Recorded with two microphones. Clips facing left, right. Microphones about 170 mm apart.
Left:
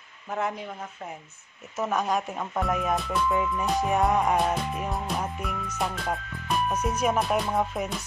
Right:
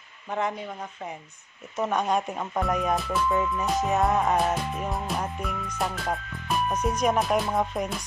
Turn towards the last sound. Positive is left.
turn(degrees=5)  # may be behind; listen again after turning